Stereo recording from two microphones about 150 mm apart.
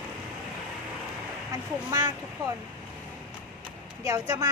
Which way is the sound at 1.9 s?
25° right (ahead or behind).